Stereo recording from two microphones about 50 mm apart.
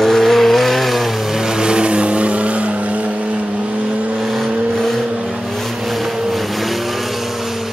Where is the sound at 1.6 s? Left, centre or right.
Centre.